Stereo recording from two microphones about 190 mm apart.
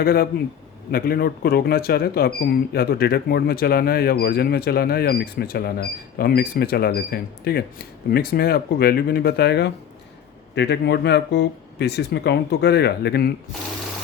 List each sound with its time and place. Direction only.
0.0 s speech: 55° left (ahead or behind)